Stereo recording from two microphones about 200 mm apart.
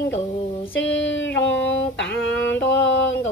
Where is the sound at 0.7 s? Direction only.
65° left (ahead or behind).